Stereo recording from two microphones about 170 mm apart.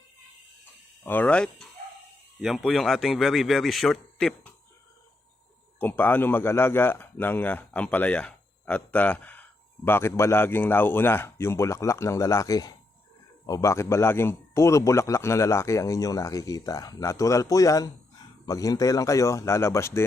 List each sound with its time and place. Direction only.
1.0 s a man's voice: 10° left (ahead or behind)
5.8 s speech: 10° left (ahead or behind)